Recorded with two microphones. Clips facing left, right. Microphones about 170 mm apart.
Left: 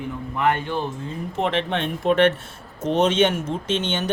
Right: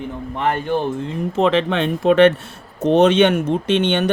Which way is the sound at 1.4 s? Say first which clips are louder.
Right 6 dB; 90° right.